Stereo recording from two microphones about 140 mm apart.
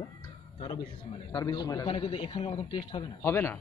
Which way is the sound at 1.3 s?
30° left (ahead or behind).